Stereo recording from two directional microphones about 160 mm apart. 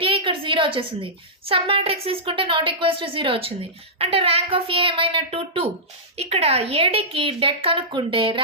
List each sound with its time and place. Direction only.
0.0 s a woman's voice: 35° right (ahead or behind)